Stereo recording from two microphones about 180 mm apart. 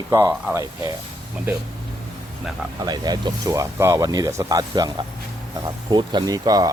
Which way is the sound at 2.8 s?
20° right (ahead or behind).